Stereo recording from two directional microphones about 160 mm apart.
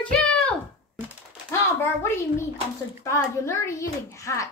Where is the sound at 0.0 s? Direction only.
5° left (ahead or behind).